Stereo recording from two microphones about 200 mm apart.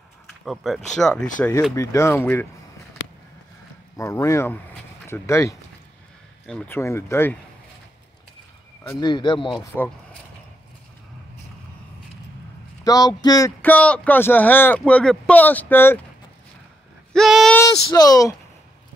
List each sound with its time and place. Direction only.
0.5 s speech: centre (ahead or behind)
1.8 s speech: 15° left (ahead or behind)
3.9 s speech: 15° left (ahead or behind)
8.8 s speech: 20° left (ahead or behind)
9.7 s speech: 10° left (ahead or behind)
12.8 s speech: 20° left (ahead or behind)
13.6 s speech: 5° left (ahead or behind)
17.1 s a sound: centre (ahead or behind)
17.6 s speech: 20° left (ahead or behind)